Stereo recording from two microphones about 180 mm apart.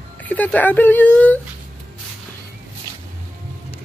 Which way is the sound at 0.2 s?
10° left (ahead or behind).